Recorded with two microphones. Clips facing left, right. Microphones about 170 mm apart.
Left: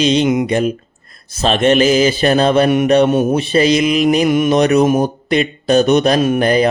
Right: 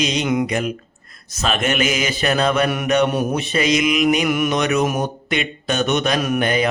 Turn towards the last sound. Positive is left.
turn(degrees=35)  # may be behind; listen again after turning